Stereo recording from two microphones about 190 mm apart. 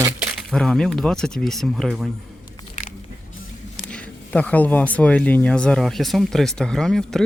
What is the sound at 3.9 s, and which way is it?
Speech, 5° left (ahead or behind).